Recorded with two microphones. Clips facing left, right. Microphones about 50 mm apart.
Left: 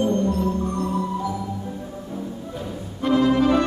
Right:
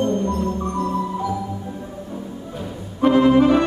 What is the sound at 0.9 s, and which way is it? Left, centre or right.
Music, centre.